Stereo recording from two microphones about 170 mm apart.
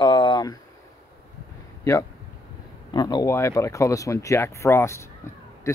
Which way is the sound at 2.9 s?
25° left (ahead or behind).